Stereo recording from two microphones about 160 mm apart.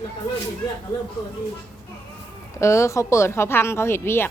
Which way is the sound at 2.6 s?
20° left (ahead or behind).